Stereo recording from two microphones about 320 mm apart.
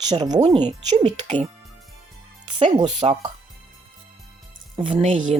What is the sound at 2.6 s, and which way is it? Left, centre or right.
Speech, centre.